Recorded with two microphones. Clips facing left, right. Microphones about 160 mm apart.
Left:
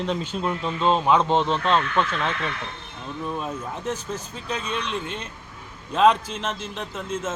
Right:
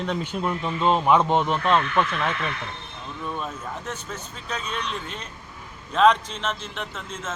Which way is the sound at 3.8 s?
30° left (ahead or behind).